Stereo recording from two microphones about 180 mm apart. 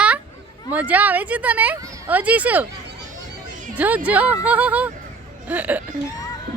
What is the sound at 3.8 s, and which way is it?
Speech, 10° right (ahead or behind).